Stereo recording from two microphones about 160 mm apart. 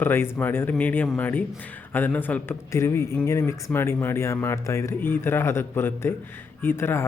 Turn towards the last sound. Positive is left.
turn(degrees=15)  # may be behind; listen again after turning